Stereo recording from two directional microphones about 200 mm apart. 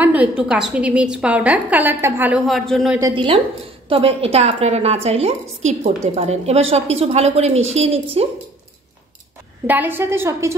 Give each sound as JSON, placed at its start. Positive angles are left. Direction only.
{"t": 0.0, "sound": "a sound", "side_deg": -10}
{"t": 0.4, "sound": "a woman's voice", "side_deg": -5}
{"t": 3.0, "sound": "a woman's voice", "side_deg": -25}
{"t": 9.7, "sound": "a woman's voice", "side_deg": -10}